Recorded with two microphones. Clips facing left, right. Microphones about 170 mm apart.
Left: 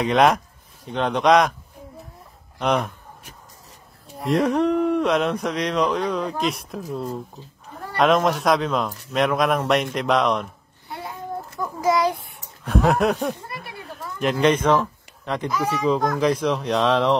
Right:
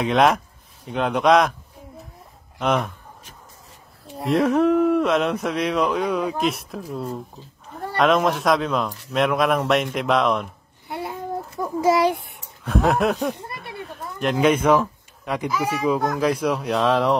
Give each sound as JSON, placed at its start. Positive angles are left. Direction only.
{"t": 0.0, "sound": "speech", "side_deg": 0}
{"t": 2.6, "sound": "speech", "side_deg": 0}
{"t": 4.2, "sound": "speech", "side_deg": 0}
{"t": 11.8, "sound": "a child's voice", "side_deg": -30}
{"t": 12.6, "sound": "a child's voice", "side_deg": 0}